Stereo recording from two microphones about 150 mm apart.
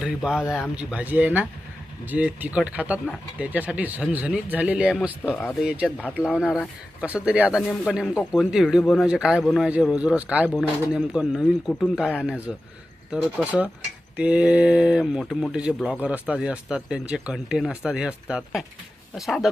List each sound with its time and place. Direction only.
0.0 s speech: 5° right (ahead or behind)
5.8 s speech: 10° left (ahead or behind)
7.0 s speech: 10° right (ahead or behind)